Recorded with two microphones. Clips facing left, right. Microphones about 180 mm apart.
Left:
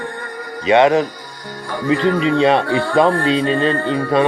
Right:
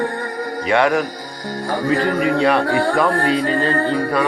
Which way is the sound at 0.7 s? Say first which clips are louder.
Left 4 dB; 20° left (ahead or behind).